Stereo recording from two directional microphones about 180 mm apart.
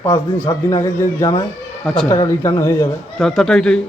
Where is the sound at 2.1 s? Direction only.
15° left (ahead or behind).